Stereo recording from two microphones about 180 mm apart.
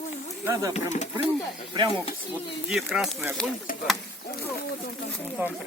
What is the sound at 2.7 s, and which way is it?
Speech, centre (ahead or behind).